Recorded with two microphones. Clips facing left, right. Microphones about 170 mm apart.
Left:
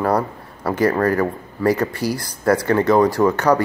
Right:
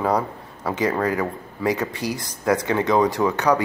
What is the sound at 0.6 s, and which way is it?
Speech, 15° right (ahead or behind).